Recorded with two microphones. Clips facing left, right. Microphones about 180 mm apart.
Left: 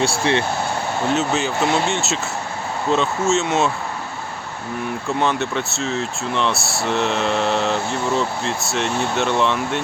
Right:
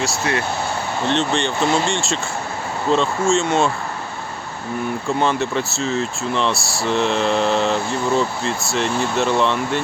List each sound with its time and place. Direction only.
0.0 s speech: 30° left (ahead or behind)
1.0 s speech: 5° left (ahead or behind)
5.0 s speech: centre (ahead or behind)